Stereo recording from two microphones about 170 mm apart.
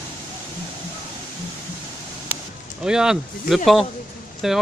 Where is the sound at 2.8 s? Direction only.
5° right (ahead or behind).